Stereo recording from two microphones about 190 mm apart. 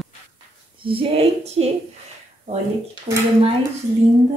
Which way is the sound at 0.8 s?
30° right (ahead or behind).